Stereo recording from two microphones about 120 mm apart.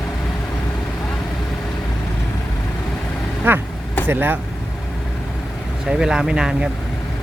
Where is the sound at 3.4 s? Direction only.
20° right (ahead or behind).